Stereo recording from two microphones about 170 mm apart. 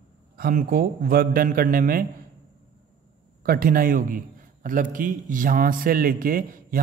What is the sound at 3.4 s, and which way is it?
A man's voice, 60° right (ahead or behind).